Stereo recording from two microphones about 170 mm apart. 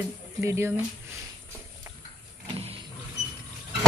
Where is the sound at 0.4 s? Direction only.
15° right (ahead or behind).